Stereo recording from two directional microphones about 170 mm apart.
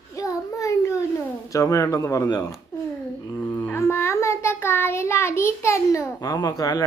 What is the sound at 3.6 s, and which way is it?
Child singing, 15° left (ahead or behind).